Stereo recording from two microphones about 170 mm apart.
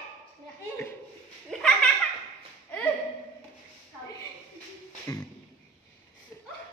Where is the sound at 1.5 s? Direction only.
5° left (ahead or behind).